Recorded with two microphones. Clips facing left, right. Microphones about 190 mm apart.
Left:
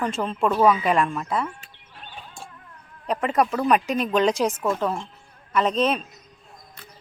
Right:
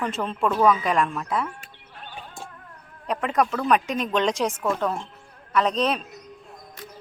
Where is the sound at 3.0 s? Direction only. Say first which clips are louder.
Left 1 dB; centre (ahead or behind).